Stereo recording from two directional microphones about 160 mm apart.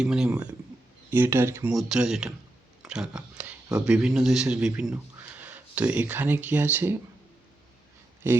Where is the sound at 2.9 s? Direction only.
5° right (ahead or behind).